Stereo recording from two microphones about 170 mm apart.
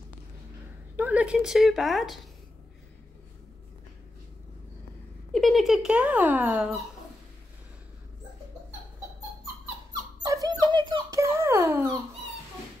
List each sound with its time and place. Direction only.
0.9 s a woman's voice: 10° right (ahead or behind)
5.3 s speech: centre (ahead or behind)
10.2 s a sound: 20° right (ahead or behind)
10.7 s squeak: 25° right (ahead or behind)